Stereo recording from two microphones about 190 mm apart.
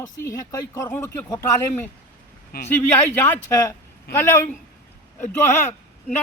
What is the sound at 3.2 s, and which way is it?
Speech, 10° left (ahead or behind).